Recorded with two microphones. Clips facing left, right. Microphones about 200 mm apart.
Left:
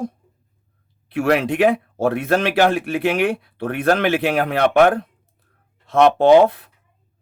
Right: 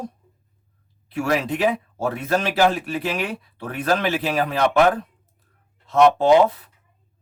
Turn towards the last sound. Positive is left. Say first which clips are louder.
# left 4 dB
turn(degrees=60)  # may be behind; listen again after turning